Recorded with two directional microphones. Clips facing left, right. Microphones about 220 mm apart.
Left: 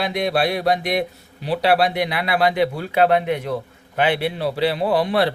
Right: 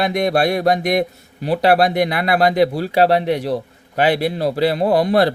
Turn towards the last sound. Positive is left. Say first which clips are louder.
# right 4 dB
turn(degrees=-40)  # may be behind; listen again after turning